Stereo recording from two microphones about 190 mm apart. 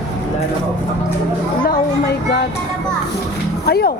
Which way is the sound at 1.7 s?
55° left (ahead or behind).